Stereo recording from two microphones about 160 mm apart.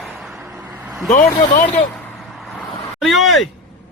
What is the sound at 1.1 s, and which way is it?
Speech, 55° left (ahead or behind).